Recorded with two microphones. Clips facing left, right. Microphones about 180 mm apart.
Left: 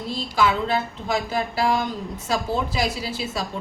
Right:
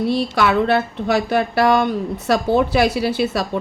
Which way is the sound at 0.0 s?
70° right (ahead or behind).